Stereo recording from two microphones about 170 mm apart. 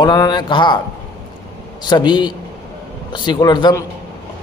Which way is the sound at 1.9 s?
25° left (ahead or behind).